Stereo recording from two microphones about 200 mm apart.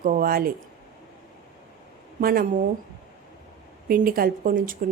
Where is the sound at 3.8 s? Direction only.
45° right (ahead or behind).